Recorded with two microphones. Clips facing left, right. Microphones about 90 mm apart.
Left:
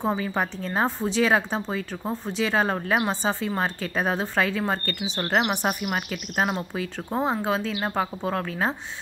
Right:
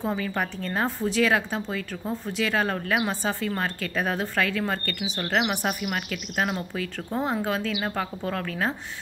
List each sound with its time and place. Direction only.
0.0 s a woman's voice: 20° left (ahead or behind)